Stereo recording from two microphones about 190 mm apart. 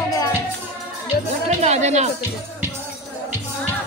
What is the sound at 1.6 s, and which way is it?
Speech, 35° right (ahead or behind).